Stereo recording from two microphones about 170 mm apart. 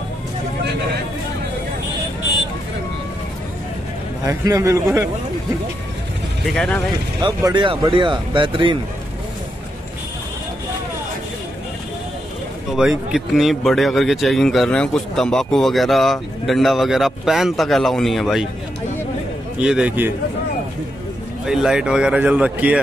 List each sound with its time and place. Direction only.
4.3 s a man's voice: 20° right (ahead or behind)
6.5 s speech: 5° left (ahead or behind)
7.2 s speech: 25° right (ahead or behind)
12.6 s speech: 5° right (ahead or behind)
19.6 s speech: 5° right (ahead or behind)
21.5 s speech: 5° right (ahead or behind)